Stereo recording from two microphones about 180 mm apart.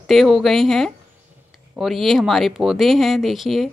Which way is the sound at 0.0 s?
Centre (ahead or behind).